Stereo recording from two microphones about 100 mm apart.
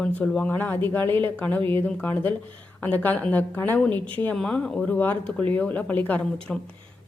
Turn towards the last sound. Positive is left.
turn(degrees=10)  # may be behind; listen again after turning